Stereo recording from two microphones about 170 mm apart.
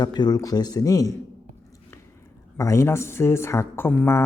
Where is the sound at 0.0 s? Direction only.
25° left (ahead or behind).